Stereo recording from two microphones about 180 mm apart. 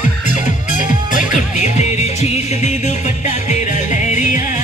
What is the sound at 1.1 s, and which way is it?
Music, 40° left (ahead or behind).